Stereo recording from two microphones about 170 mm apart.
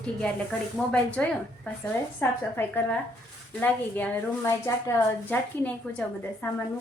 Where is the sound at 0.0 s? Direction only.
5° left (ahead or behind).